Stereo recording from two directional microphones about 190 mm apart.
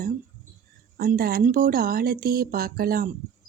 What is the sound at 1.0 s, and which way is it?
Speech, 50° right (ahead or behind).